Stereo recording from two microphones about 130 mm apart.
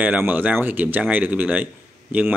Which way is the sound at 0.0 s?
15° right (ahead or behind).